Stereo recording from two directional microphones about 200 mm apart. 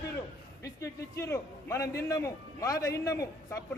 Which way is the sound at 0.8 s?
15° left (ahead or behind).